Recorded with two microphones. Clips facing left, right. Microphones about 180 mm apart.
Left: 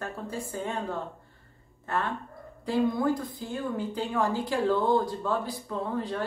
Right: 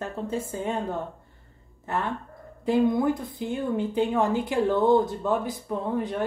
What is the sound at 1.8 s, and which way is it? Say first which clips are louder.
A woman's voice: right 2 dB; 20° right (ahead or behind).